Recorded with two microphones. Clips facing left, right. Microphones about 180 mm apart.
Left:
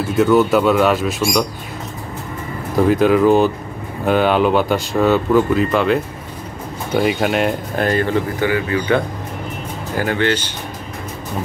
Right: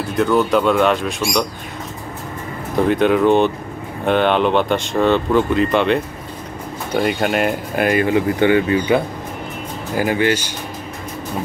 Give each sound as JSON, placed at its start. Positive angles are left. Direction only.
{"t": 0.1, "sound": "speech", "side_deg": 5}
{"t": 2.9, "sound": "speech", "side_deg": 0}
{"t": 8.4, "sound": "speech", "side_deg": -25}
{"t": 9.9, "sound": "speech", "side_deg": -10}